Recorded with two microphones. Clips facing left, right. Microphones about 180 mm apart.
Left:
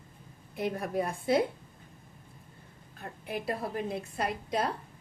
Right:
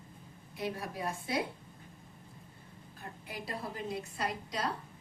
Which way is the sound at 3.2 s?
55° left (ahead or behind).